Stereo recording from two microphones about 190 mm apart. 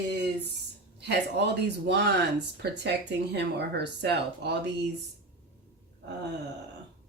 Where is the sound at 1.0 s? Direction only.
65° right (ahead or behind).